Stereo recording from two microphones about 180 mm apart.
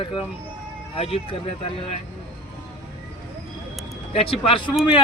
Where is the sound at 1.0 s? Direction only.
35° left (ahead or behind).